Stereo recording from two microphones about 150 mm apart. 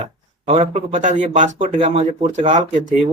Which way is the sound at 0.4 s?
45° right (ahead or behind).